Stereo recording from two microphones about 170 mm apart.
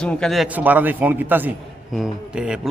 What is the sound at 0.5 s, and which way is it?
A man's voice, 10° right (ahead or behind).